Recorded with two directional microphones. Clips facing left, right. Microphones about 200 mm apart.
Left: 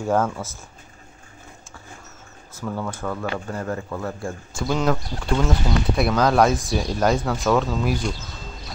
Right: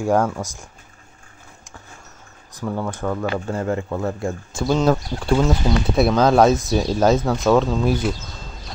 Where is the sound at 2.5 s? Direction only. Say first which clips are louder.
Right 3 dB; 15° right (ahead or behind).